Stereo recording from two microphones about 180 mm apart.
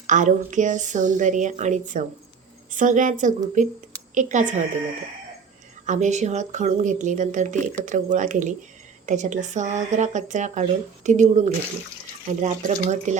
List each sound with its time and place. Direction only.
0.1 s speech: 45° right (ahead or behind)
5.8 s speech: 40° right (ahead or behind)